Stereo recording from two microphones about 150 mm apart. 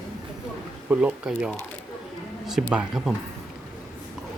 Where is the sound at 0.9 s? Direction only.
5° right (ahead or behind).